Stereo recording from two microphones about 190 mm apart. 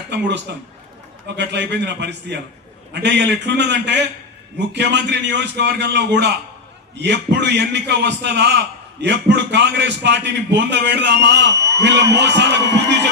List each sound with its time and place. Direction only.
0.1 s a man's voice: 65° right (ahead or behind)